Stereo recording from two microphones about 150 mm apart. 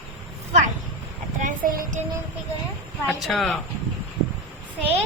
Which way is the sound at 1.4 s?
65° right (ahead or behind).